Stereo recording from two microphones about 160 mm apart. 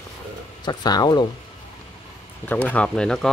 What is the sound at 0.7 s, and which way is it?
Speech, 25° left (ahead or behind).